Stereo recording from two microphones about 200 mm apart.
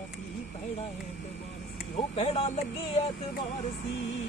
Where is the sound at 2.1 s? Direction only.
30° left (ahead or behind).